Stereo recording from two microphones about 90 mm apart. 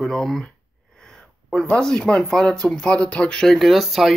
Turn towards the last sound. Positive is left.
turn(degrees=0)  # may be behind; listen again after turning